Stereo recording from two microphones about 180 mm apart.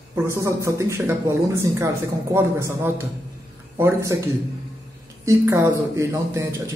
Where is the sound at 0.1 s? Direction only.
15° right (ahead or behind).